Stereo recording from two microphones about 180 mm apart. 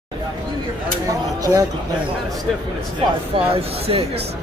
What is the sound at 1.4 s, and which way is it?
Speech, 20° right (ahead or behind).